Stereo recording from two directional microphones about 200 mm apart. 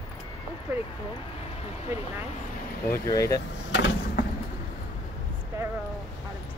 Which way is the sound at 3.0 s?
15° left (ahead or behind).